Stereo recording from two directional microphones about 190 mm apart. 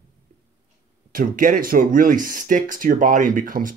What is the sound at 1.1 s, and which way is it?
Speech, 45° right (ahead or behind).